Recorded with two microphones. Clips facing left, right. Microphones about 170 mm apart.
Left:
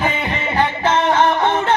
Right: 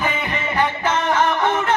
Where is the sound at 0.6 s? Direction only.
30° left (ahead or behind).